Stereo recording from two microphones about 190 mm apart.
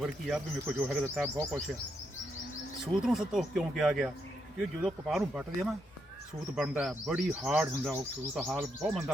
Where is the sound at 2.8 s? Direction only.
Centre (ahead or behind).